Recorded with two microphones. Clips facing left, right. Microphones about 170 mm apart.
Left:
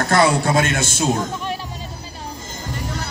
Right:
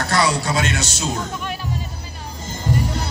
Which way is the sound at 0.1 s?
50° left (ahead or behind).